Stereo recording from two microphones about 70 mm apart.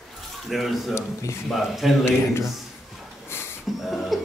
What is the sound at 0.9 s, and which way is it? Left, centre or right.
Speech, left.